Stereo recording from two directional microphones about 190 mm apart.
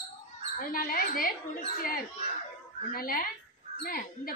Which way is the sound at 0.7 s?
45° left (ahead or behind).